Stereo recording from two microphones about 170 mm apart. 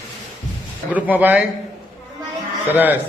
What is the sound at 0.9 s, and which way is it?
Speech, 10° right (ahead or behind).